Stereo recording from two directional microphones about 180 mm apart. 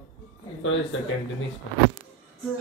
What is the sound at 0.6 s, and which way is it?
Speech, 90° left.